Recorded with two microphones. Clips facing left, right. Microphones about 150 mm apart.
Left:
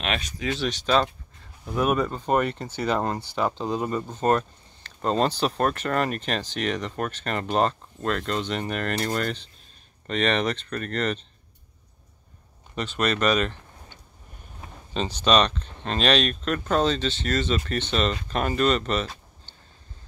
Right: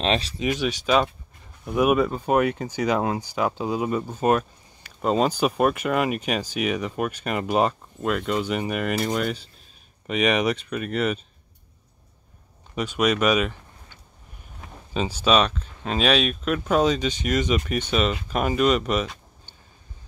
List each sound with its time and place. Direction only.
0.0 s speech: 30° right (ahead or behind)
0.5 s speech: 10° right (ahead or behind)
12.7 s speech: 10° right (ahead or behind)
15.0 s speech: 5° right (ahead or behind)